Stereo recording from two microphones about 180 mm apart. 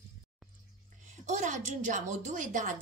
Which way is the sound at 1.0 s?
40° right (ahead or behind).